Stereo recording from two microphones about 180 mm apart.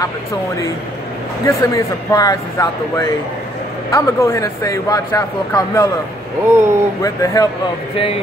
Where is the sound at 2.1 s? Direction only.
20° left (ahead or behind).